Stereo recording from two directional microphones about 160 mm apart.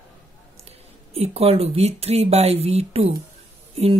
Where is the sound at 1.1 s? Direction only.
40° right (ahead or behind).